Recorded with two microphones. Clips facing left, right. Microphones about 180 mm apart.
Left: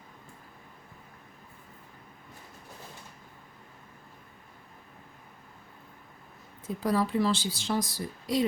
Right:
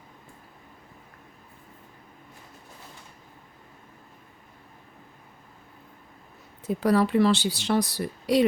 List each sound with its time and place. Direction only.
6.7 s speech: 70° right (ahead or behind)